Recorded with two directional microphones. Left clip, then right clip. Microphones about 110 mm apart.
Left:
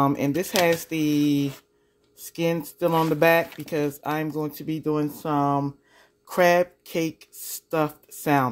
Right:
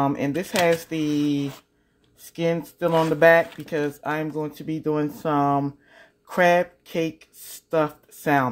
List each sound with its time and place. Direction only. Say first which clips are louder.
0.0 s speech: left 1 dB; 20° left (ahead or behind)
4.8 s speech: right 2 dB; centre (ahead or behind)
6.2 s speech: even; 10° left (ahead or behind)